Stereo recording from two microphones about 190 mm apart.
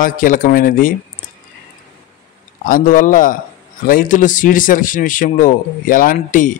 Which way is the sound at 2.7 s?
45° left (ahead or behind).